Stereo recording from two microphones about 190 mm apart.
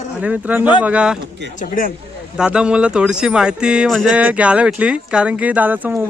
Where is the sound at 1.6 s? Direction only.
45° left (ahead or behind).